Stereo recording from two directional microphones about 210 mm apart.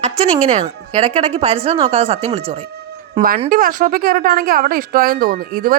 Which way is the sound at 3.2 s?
45° right (ahead or behind).